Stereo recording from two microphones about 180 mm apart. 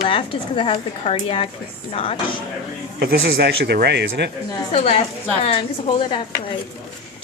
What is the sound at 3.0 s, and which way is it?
Speech, 65° right (ahead or behind).